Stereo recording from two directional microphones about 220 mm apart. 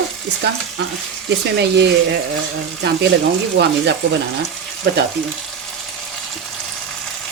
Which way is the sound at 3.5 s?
50° right (ahead or behind).